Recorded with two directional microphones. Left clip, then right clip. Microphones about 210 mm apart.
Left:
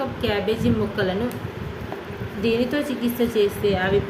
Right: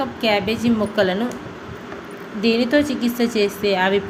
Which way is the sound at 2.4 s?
25° right (ahead or behind).